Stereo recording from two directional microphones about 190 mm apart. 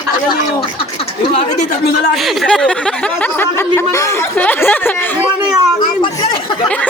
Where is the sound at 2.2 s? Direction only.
Centre (ahead or behind).